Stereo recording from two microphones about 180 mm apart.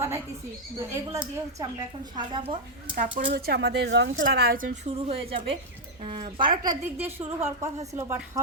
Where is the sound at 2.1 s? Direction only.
25° right (ahead or behind).